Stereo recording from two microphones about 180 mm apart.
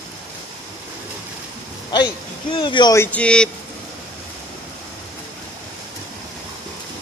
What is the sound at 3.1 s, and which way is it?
Speech, 5° left (ahead or behind).